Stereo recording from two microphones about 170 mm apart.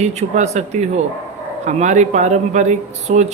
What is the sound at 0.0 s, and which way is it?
Speech, 40° right (ahead or behind).